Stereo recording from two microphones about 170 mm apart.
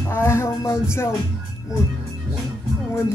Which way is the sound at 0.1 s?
15° left (ahead or behind).